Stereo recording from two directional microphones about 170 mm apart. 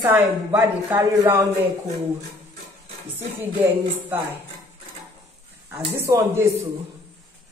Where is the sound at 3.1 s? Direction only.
15° right (ahead or behind).